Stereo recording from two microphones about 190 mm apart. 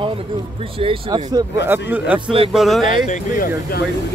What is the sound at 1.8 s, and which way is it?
Speech, 10° right (ahead or behind).